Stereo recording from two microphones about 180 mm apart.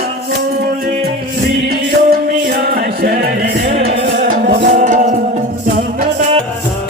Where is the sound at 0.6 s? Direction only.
55° right (ahead or behind).